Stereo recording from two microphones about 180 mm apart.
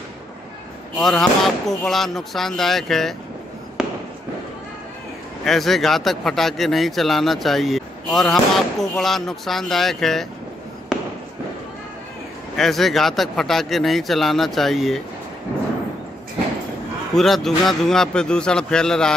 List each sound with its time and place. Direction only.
0.9 s speech: centre (ahead or behind)
3.8 s fireworks: 5° right (ahead or behind)
5.4 s speech: centre (ahead or behind)
12.5 s speech: centre (ahead or behind)
17.1 s speech: centre (ahead or behind)